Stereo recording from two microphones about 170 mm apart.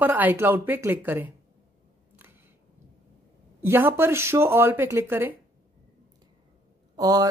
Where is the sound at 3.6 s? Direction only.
15° right (ahead or behind).